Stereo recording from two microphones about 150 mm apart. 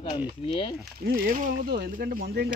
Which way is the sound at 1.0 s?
70° right (ahead or behind).